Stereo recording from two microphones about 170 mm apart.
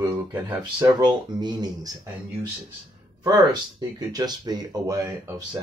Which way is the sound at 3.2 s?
20° right (ahead or behind).